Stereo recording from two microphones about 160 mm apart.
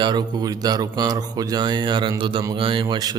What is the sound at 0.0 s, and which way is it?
Speech, 25° right (ahead or behind).